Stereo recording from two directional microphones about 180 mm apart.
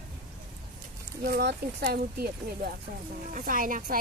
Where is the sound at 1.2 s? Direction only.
60° right (ahead or behind).